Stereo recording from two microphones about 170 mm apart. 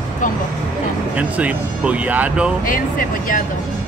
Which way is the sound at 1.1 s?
10° right (ahead or behind).